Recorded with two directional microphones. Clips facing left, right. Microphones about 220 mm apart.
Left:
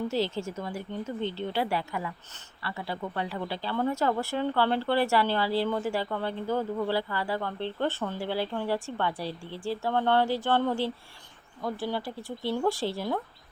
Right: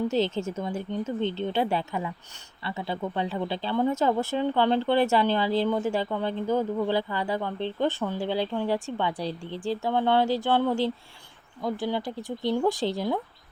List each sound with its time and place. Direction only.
0.1 s speech: 20° right (ahead or behind)